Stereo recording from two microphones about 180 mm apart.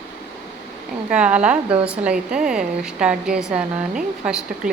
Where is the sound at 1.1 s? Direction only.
5° right (ahead or behind).